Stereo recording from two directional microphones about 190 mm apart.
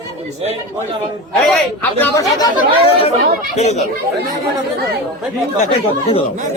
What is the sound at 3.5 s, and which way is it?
Speech, 35° left (ahead or behind).